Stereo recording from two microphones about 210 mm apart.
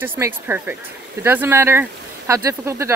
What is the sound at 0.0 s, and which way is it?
Speech, 10° right (ahead or behind).